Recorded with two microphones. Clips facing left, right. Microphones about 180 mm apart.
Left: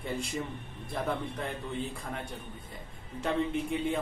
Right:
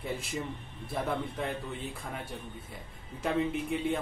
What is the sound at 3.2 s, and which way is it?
Speech, centre (ahead or behind).